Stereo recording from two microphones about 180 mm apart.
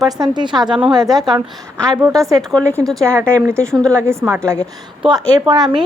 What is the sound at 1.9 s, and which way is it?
Speech, 15° right (ahead or behind).